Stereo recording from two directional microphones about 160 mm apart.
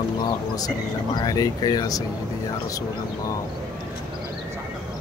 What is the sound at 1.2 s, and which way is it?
Speech, 25° left (ahead or behind).